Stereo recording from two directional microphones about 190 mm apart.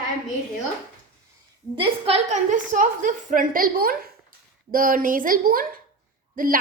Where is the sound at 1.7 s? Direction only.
30° right (ahead or behind).